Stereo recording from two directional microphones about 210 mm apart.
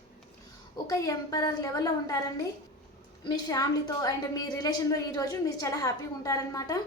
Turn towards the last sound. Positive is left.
turn(degrees=15)  # may be behind; listen again after turning